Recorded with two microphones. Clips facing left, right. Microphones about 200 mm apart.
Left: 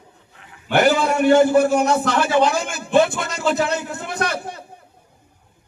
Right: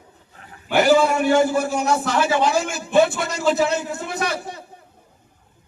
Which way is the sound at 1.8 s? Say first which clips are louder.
Left 1 dB; 5° right (ahead or behind).